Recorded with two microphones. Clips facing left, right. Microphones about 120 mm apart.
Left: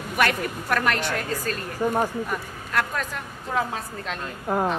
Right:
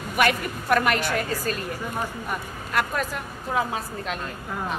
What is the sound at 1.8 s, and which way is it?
Speech, 35° left (ahead or behind).